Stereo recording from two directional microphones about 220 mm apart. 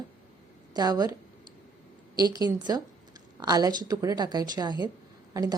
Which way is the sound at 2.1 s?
20° right (ahead or behind).